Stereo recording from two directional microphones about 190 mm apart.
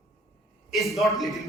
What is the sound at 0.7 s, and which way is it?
Speech, centre (ahead or behind).